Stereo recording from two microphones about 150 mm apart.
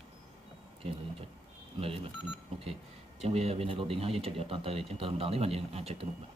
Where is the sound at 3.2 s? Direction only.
45° right (ahead or behind).